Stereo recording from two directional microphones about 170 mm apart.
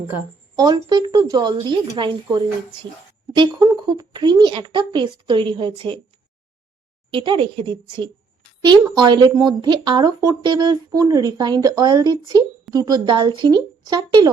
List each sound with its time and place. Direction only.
0.5 s speech: 25° right (ahead or behind)
7.1 s a woman's voice: 30° right (ahead or behind)